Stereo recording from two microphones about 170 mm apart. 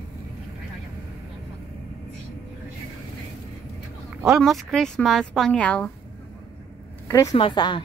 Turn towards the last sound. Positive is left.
turn(degrees=25)  # may be behind; listen again after turning